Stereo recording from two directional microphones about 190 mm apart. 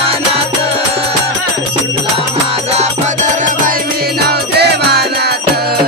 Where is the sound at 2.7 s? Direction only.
40° right (ahead or behind).